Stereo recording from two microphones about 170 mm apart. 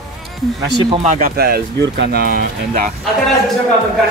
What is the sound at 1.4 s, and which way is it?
Speech, 75° right (ahead or behind).